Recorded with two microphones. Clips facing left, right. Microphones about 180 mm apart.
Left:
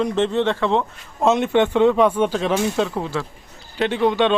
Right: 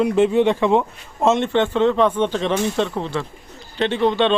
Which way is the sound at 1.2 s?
Centre (ahead or behind).